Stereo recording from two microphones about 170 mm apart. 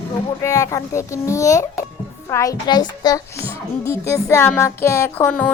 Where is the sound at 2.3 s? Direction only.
20° left (ahead or behind).